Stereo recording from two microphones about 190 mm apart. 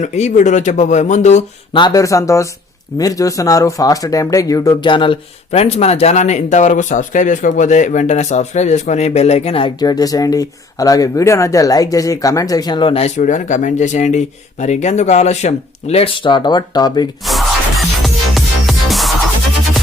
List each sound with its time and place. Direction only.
0.0 s speech: 35° left (ahead or behind)
1.8 s speech: 15° left (ahead or behind)
17.2 s music: centre (ahead or behind)